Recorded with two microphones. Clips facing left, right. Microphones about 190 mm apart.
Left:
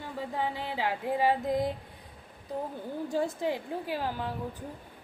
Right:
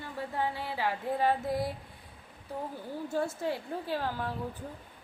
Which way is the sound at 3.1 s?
15° left (ahead or behind).